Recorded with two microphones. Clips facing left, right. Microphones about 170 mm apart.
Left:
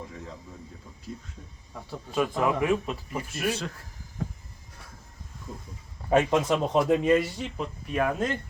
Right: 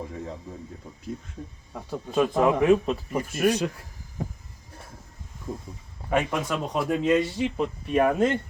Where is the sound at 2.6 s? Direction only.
20° right (ahead or behind).